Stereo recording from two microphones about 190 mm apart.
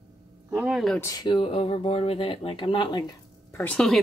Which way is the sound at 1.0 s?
20° left (ahead or behind).